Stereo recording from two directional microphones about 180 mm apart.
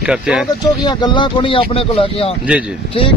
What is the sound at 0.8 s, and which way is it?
Speech, 25° left (ahead or behind).